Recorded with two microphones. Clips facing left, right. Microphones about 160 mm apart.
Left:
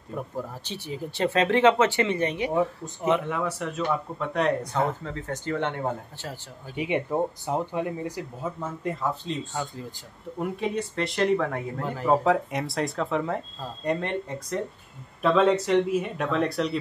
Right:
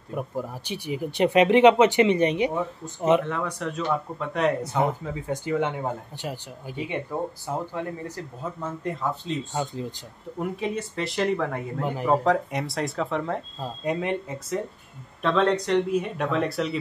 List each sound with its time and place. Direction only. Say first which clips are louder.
0.1 s speech: right 2 dB; 10° right (ahead or behind)
3.3 s speech: even; 5° left (ahead or behind)
4.7 s speech: right 2 dB; 10° right (ahead or behind)
6.8 s speech: left 4 dB; 20° left (ahead or behind)
8.5 s speech: right 3 dB; centre (ahead or behind)
9.5 s speech: right 4 dB; 20° right (ahead or behind)
10.4 s speech: even; centre (ahead or behind)
11.8 s speech: right 5 dB; 15° right (ahead or behind)
12.1 s speech: left 1 dB; centre (ahead or behind)